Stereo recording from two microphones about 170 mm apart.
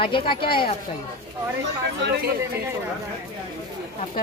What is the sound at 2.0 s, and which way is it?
Speech, 85° right.